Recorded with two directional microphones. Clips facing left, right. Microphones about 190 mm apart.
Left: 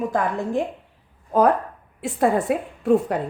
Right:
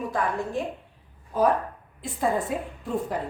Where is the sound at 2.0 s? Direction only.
75° left (ahead or behind).